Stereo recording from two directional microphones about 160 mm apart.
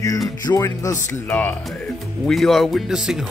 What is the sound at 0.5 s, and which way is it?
Speech, 20° left (ahead or behind).